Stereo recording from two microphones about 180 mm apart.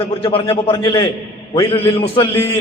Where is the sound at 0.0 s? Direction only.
30° left (ahead or behind).